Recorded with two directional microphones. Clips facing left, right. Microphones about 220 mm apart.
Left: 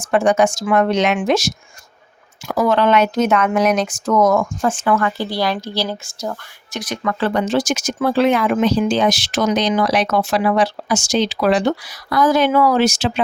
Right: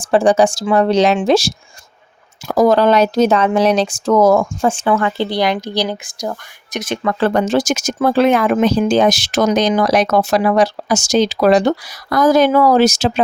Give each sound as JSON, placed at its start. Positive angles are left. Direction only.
{"t": 0.0, "sound": "speech", "side_deg": -30}
{"t": 6.7, "sound": "speech", "side_deg": -25}